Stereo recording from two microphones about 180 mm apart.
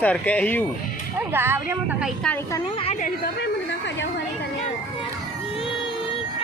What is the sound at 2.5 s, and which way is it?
Speech, 30° left (ahead or behind).